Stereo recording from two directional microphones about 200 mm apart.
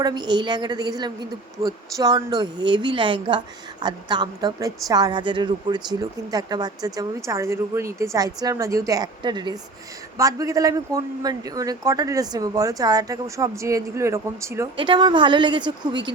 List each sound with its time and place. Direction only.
0.0 s a woman's voice: 20° right (ahead or behind)